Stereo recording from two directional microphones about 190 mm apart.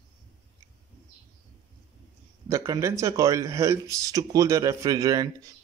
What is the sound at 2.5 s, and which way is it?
Speech, 15° right (ahead or behind).